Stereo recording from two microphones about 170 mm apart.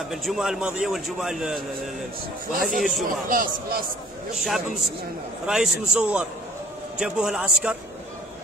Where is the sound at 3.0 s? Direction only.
55° right (ahead or behind).